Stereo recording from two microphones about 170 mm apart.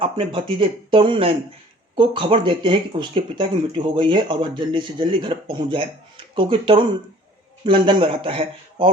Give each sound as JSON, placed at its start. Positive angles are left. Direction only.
{"t": 0.0, "sound": "speech", "side_deg": -30}